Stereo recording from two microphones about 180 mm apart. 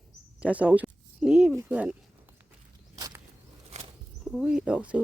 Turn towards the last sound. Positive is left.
turn(degrees=-5)  # may be behind; listen again after turning